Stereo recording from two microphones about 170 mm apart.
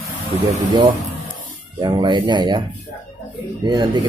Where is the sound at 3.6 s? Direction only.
25° right (ahead or behind).